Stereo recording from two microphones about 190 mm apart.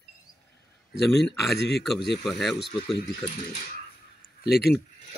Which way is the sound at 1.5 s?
60° left (ahead or behind).